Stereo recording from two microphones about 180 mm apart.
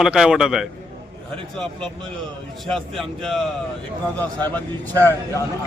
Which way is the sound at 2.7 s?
Centre (ahead or behind).